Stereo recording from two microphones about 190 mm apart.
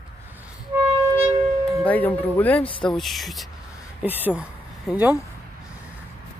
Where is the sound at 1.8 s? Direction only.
10° left (ahead or behind).